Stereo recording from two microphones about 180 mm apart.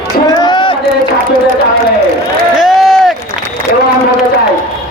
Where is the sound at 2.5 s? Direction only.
Centre (ahead or behind).